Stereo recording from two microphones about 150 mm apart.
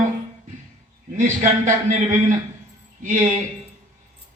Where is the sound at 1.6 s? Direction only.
55° right (ahead or behind).